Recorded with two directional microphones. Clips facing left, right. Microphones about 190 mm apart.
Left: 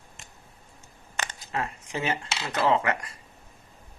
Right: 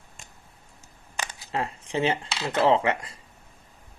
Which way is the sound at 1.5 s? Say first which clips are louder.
Right 3 dB; 30° right (ahead or behind).